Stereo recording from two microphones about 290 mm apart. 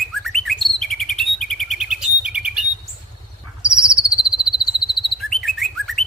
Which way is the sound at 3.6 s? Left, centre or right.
Centre.